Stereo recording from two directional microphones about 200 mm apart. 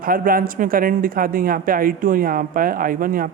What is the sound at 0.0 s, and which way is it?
Speech, 45° right (ahead or behind).